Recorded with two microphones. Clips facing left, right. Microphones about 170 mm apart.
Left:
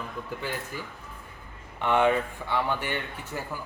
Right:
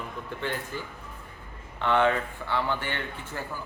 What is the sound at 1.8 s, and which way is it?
A man's voice, 15° left (ahead or behind).